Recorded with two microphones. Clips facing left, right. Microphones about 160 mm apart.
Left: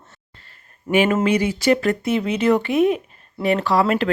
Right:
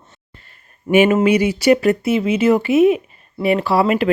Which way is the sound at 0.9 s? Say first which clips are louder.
Right 4 dB; 15° right (ahead or behind).